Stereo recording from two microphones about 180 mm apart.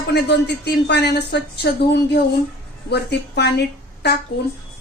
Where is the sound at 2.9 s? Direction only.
65° left (ahead or behind).